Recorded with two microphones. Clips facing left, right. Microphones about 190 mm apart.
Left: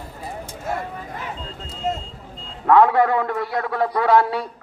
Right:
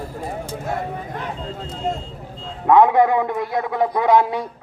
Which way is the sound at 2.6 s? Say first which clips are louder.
Right 1 dB; 20° right (ahead or behind).